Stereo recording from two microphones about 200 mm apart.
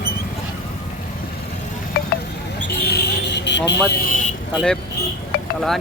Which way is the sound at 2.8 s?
55° left (ahead or behind).